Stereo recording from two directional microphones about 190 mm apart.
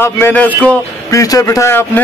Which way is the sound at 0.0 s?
10° left (ahead or behind).